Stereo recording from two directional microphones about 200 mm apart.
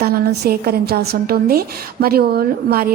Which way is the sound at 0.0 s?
50° right (ahead or behind).